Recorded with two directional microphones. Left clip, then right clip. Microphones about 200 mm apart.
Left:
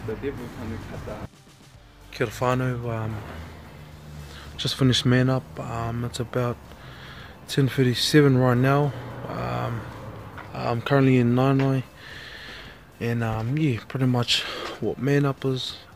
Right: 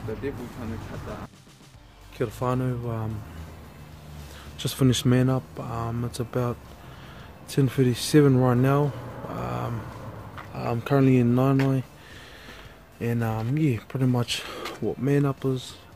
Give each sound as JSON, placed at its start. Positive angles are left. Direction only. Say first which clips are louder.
{"t": 2.1, "sound": "speech", "louder": "left 3 dB", "side_deg": -5}
{"t": 4.6, "sound": "speech", "louder": "left 2 dB", "side_deg": -5}
{"t": 13.0, "sound": "speech", "louder": "left 1 dB", "side_deg": -5}